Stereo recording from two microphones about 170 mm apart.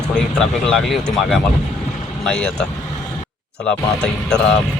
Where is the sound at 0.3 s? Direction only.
Centre (ahead or behind).